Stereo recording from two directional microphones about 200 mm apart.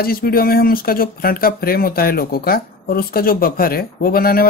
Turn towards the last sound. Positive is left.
turn(degrees=50)  # may be behind; listen again after turning